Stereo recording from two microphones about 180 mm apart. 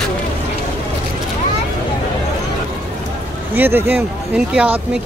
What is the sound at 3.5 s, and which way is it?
Speech, 10° right (ahead or behind).